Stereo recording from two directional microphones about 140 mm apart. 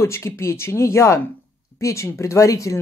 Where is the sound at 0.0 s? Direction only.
20° left (ahead or behind).